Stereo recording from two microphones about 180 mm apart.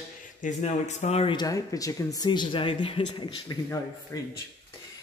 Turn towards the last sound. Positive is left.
turn(degrees=20)  # may be behind; listen again after turning